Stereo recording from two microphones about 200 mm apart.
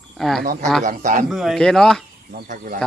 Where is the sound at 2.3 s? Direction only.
40° right (ahead or behind).